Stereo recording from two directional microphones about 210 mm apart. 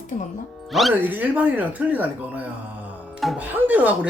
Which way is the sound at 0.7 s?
Centre (ahead or behind).